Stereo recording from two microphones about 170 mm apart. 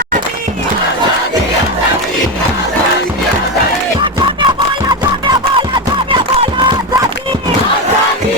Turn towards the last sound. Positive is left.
turn(degrees=-30)  # may be behind; listen again after turning